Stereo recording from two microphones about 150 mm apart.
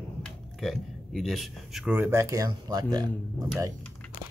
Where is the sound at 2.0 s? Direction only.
15° right (ahead or behind).